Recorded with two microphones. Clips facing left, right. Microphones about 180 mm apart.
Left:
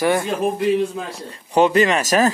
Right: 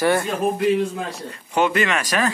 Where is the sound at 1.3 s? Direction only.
35° left (ahead or behind).